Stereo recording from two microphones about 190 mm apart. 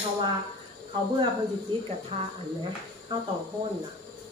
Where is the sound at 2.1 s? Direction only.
30° right (ahead or behind).